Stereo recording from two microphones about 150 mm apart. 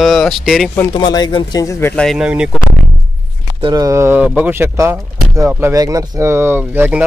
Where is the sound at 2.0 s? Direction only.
Centre (ahead or behind).